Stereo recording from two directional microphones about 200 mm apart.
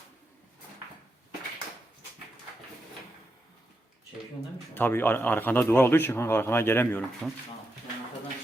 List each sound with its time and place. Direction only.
4.7 s a man's voice: 10° left (ahead or behind)